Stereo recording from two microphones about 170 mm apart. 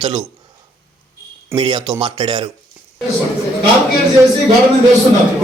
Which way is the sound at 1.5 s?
25° right (ahead or behind).